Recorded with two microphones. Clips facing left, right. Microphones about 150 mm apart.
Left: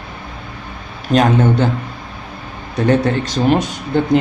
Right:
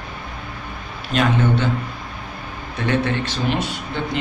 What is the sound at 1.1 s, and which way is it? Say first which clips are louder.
Speech: left 6 dB; 40° left (ahead or behind).